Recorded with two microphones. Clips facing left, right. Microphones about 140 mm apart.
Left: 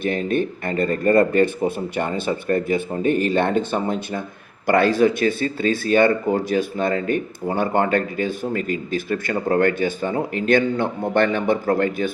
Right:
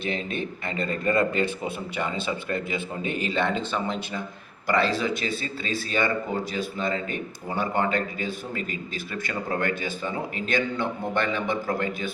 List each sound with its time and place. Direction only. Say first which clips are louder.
0.0 s speech: left 8 dB; 50° left (ahead or behind)